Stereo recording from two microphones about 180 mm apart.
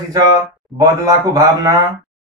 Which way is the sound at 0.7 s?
20° right (ahead or behind).